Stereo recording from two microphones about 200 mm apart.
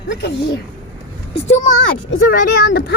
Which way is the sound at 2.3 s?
50° left (ahead or behind).